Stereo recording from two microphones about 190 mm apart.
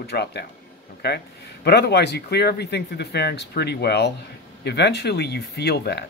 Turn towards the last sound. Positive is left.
turn(degrees=60)  # may be behind; listen again after turning